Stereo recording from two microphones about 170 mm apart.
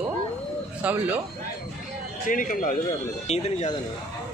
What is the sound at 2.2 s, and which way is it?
Speech, 50° left (ahead or behind).